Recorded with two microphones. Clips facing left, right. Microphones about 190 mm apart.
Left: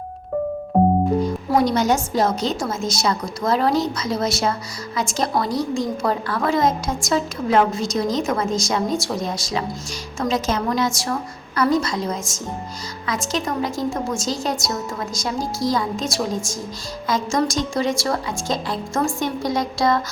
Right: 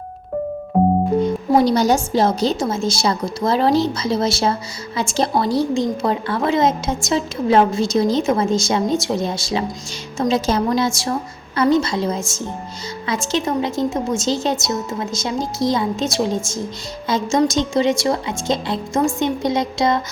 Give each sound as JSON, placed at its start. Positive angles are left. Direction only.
{"t": 1.5, "sound": "a woman's voice", "side_deg": -30}